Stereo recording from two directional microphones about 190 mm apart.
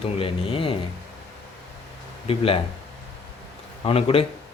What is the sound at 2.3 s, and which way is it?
Speech, 30° left (ahead or behind).